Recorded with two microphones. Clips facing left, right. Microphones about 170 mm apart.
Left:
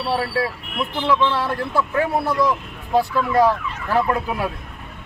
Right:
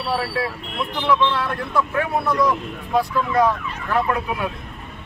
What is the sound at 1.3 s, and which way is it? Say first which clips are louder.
Speech: left 1 dB; 30° left (ahead or behind).